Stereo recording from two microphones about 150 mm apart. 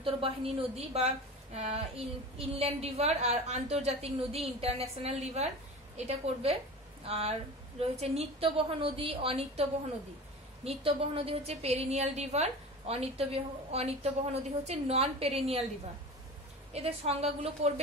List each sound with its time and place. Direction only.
0.0 s a woman's voice: 35° right (ahead or behind)
16.7 s a woman's voice: 45° right (ahead or behind)